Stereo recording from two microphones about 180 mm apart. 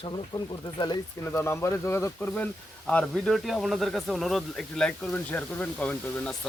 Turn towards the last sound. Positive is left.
turn(degrees=5)  # may be behind; listen again after turning